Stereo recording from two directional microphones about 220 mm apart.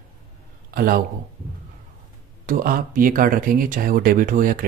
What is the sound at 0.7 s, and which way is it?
Speech, 40° right (ahead or behind).